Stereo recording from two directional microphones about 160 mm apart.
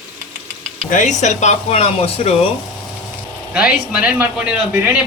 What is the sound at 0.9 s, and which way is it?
Speech, 55° left (ahead or behind).